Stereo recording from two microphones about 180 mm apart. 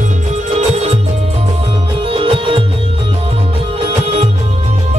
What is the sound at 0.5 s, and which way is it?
Music, 35° right (ahead or behind).